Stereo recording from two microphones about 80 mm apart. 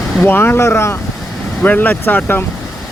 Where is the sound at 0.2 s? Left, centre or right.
Left.